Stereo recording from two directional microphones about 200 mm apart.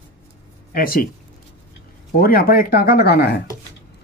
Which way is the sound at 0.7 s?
45° left (ahead or behind).